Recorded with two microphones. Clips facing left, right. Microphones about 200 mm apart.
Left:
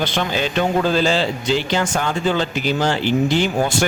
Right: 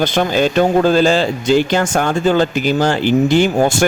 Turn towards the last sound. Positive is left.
turn(degrees=-45)  # may be behind; listen again after turning